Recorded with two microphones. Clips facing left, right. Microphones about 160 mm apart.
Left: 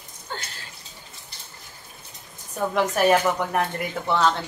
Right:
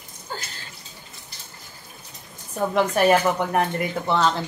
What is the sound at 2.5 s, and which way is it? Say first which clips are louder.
A woman's voice: right 2 dB; centre (ahead or behind).